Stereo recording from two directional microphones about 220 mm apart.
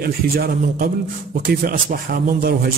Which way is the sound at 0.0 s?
45° right (ahead or behind).